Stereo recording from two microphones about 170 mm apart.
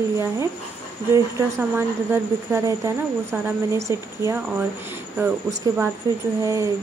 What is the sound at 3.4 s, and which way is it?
A woman's voice, 15° right (ahead or behind).